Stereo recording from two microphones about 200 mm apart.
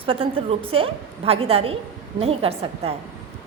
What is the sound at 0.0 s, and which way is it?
A woman's voice, 25° right (ahead or behind).